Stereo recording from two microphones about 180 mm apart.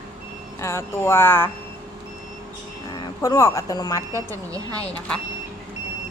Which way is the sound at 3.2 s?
15° left (ahead or behind).